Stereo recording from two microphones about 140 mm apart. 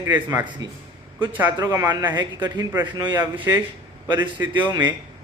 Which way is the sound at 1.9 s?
30° right (ahead or behind).